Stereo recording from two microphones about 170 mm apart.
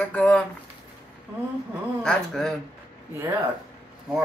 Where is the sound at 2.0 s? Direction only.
5° left (ahead or behind).